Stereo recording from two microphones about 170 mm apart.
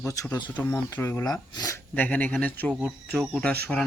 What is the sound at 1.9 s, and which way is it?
Speech, 10° left (ahead or behind).